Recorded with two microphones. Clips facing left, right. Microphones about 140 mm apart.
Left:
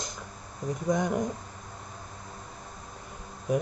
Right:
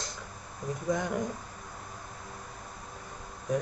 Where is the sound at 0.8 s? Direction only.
20° left (ahead or behind).